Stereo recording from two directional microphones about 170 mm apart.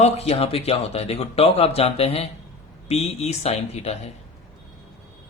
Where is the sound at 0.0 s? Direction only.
40° left (ahead or behind).